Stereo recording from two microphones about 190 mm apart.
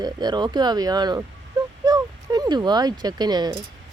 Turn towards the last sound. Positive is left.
turn(degrees=-20)  # may be behind; listen again after turning